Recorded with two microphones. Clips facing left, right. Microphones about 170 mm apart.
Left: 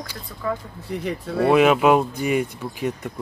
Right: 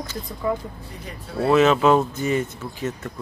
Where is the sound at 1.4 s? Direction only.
10° left (ahead or behind).